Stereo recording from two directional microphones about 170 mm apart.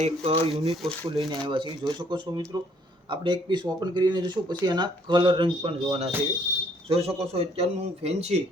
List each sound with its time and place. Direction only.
0.0 s speech: 35° right (ahead or behind)